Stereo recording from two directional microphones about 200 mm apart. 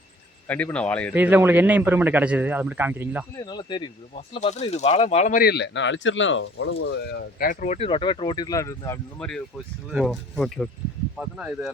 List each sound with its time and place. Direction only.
0.4 s speech: 5° left (ahead or behind)
1.1 s a man's voice: 10° right (ahead or behind)
3.3 s speech: 20° left (ahead or behind)
4.1 s speech: 35° left (ahead or behind); by 7.2 s 70° left (ahead or behind)
7.3 s speech: 45° left (ahead or behind); by 9.0 s 15° left (ahead or behind)
9.1 s speech: 5° left (ahead or behind)